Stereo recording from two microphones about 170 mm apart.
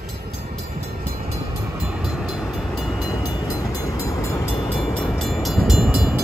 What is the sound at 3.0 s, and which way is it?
Train, 20° left (ahead or behind).